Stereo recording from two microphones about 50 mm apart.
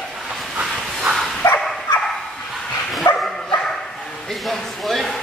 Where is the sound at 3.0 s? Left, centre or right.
Left.